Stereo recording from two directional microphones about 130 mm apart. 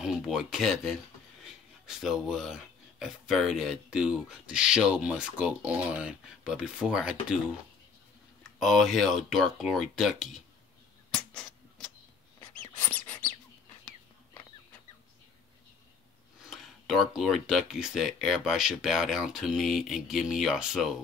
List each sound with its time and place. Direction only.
0.0 s speech: 5° right (ahead or behind)
8.5 s speech: centre (ahead or behind)
11.1 s a sound: 5° left (ahead or behind)
12.5 s mouse: 10° left (ahead or behind)
16.4 s speech: centre (ahead or behind)